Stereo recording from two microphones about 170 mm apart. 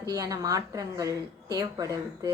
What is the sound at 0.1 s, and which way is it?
A woman's voice, 20° right (ahead or behind).